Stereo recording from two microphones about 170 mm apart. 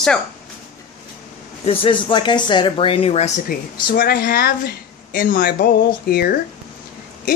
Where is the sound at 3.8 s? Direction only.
60° left (ahead or behind).